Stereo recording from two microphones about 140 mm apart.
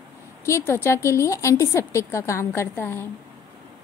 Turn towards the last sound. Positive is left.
turn(degrees=15)  # may be behind; listen again after turning